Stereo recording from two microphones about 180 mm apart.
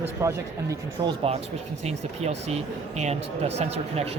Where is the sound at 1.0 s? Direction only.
30° right (ahead or behind).